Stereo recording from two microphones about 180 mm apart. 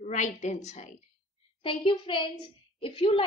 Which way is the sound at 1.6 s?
30° left (ahead or behind).